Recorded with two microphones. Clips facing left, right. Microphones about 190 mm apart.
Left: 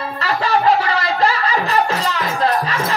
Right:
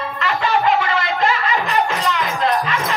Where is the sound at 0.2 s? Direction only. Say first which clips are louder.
Left 1 dB; 35° left (ahead or behind).